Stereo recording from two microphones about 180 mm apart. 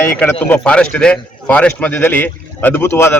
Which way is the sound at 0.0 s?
10° left (ahead or behind).